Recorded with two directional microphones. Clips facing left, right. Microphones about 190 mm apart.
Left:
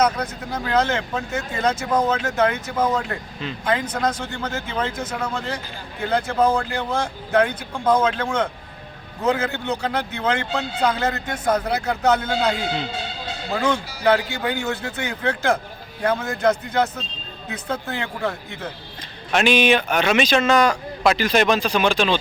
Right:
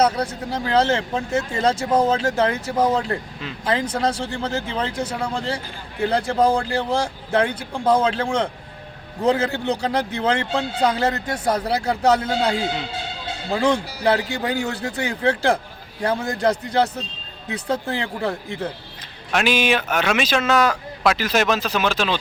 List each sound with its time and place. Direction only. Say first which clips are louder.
0.0 s a man's voice: right 1 dB; 30° right (ahead or behind)
13.6 s a man's voice: right 3 dB; 35° right (ahead or behind)
19.3 s speech: left 2 dB; 5° right (ahead or behind)